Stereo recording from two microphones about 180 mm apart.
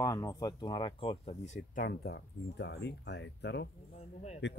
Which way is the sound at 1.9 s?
70° left (ahead or behind).